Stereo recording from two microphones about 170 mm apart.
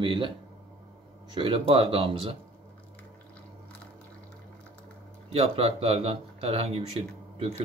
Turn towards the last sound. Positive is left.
turn(degrees=-35)  # may be behind; listen again after turning